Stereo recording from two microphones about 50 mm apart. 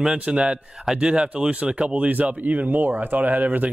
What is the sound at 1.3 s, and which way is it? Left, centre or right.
Speech, right.